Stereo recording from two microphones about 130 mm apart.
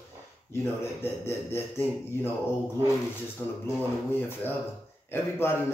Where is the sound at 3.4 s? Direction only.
15° left (ahead or behind).